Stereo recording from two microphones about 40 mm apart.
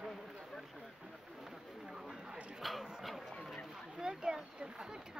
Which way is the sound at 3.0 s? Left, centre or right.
Centre.